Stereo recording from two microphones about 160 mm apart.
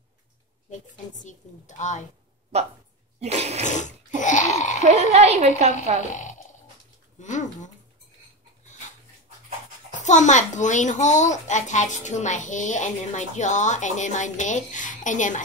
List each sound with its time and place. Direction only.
1.2 s a child's voice: 50° left (ahead or behind)
3.2 s a woman's voice: 40° right (ahead or behind)
3.6 s a sound: 50° left (ahead or behind)
4.8 s a woman's voice: 45° right (ahead or behind)
7.2 s speech: 50° left (ahead or behind)
9.8 s a child's voice: 50° left (ahead or behind)